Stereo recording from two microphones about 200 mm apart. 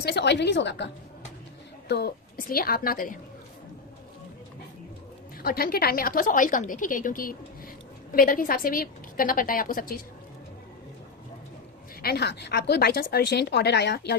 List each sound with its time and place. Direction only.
0.0 s speech: 55° left (ahead or behind)
1.9 s a woman's voice: 55° left (ahead or behind)
5.4 s a woman's voice: 50° left (ahead or behind)
12.0 s speech: 55° left (ahead or behind)